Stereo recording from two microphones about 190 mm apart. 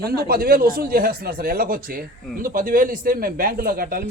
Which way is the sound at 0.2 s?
50° right (ahead or behind).